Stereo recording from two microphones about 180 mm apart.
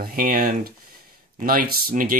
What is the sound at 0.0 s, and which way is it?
Speech, 50° right (ahead or behind).